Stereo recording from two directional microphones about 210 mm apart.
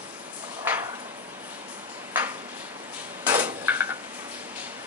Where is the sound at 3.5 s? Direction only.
10° right (ahead or behind).